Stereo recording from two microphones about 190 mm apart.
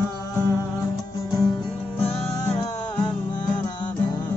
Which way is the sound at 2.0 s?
35° left (ahead or behind).